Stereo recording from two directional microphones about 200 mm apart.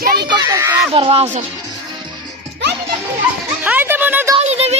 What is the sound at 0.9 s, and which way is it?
Speech, 30° right (ahead or behind).